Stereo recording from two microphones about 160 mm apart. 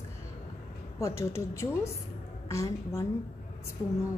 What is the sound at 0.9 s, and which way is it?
A woman's voice, 20° left (ahead or behind).